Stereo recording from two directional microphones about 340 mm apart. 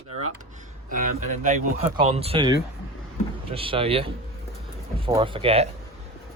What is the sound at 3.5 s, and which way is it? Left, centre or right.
A man's voice, centre.